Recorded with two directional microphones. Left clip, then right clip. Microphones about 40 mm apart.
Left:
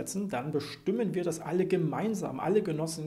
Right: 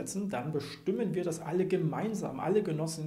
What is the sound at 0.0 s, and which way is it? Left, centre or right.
Speech, left.